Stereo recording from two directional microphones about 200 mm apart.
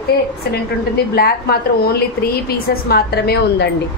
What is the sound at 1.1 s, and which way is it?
A woman's voice, 50° left (ahead or behind).